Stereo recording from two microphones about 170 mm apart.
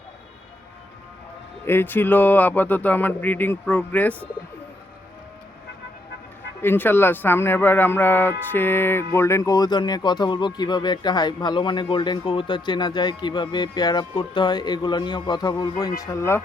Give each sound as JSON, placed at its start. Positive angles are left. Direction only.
{"t": 1.6, "sound": "speech", "side_deg": 10}
{"t": 6.6, "sound": "speech", "side_deg": 10}